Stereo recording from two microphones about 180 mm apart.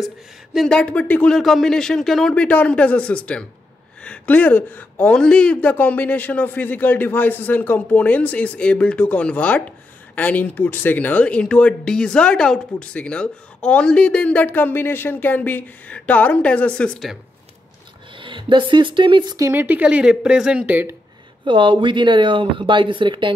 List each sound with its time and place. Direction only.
0.0 s speech: centre (ahead or behind)
18.1 s speech: 25° right (ahead or behind); by 20.9 s 10° right (ahead or behind)
21.5 s speech: 30° right (ahead or behind)